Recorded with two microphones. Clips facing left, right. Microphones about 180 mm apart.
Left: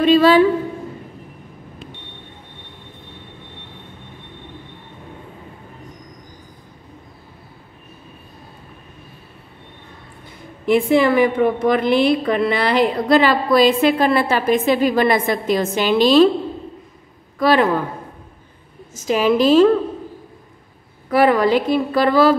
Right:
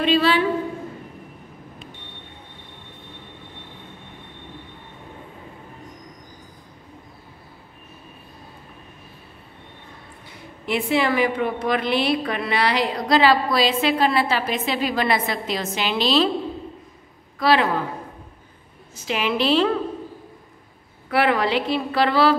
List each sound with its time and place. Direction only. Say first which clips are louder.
0.0 s a woman's voice: left 7 dB; 45° left (ahead or behind)
10.6 s a woman's voice: left 7 dB; 50° left (ahead or behind)
17.4 s a man's voice: left 4 dB; 50° left (ahead or behind)
18.9 s a woman's voice: left 7 dB; 40° left (ahead or behind)
21.1 s a woman's voice: left 6 dB; 40° left (ahead or behind)